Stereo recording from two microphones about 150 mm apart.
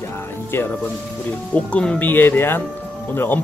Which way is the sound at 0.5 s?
15° left (ahead or behind).